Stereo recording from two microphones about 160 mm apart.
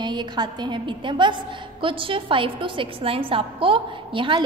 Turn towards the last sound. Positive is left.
turn(degrees=-30)  # may be behind; listen again after turning